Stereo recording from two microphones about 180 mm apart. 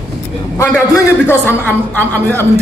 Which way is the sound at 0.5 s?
15° left (ahead or behind).